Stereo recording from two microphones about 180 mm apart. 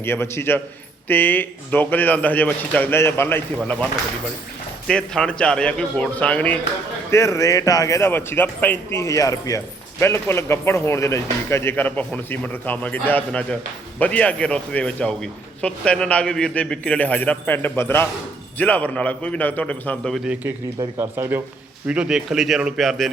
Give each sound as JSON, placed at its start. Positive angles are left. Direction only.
{"t": 0.0, "sound": "a man's voice", "side_deg": 15}
{"t": 4.9, "sound": "a man's voice", "side_deg": 5}